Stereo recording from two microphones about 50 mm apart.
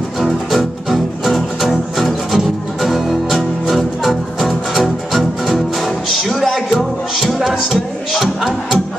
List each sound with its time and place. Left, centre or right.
0.2 s music: centre